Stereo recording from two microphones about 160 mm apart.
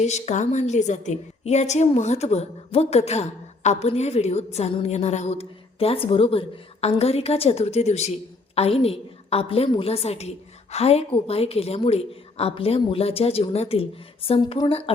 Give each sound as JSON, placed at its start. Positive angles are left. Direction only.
{"t": 0.0, "sound": "a woman's voice", "side_deg": 45}